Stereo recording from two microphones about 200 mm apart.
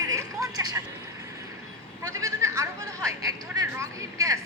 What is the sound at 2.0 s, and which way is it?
A woman's voice, 15° right (ahead or behind).